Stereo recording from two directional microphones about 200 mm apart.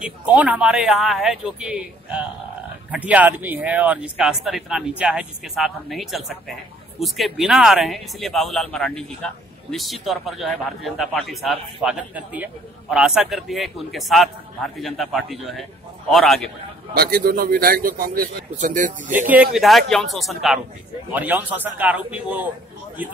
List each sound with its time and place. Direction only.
0.0 s speech: 5° right (ahead or behind)
16.9 s a man's voice: 50° right (ahead or behind)
19.2 s a man's voice: 5° right (ahead or behind)